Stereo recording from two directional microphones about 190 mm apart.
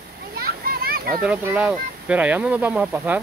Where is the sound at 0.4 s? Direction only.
55° right (ahead or behind).